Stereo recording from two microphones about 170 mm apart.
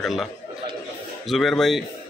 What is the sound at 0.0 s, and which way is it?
A man's voice, centre (ahead or behind).